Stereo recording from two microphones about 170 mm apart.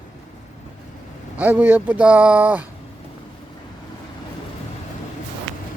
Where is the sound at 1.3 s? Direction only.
10° right (ahead or behind).